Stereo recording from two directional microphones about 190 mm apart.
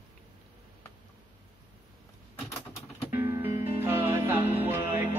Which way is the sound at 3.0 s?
10° right (ahead or behind).